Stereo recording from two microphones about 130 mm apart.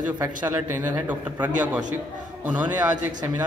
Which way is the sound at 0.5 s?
20° right (ahead or behind).